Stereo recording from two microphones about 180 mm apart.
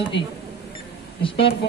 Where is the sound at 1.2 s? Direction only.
30° left (ahead or behind).